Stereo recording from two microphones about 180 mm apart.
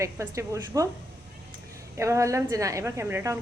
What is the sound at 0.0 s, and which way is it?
Speech, 15° right (ahead or behind).